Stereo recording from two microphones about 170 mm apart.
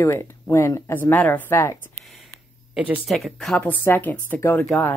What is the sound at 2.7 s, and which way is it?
Speech, 5° right (ahead or behind).